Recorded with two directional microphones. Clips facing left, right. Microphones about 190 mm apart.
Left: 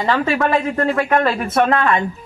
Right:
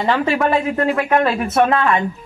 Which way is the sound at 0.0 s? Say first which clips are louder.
Right 1 dB; 15° right (ahead or behind).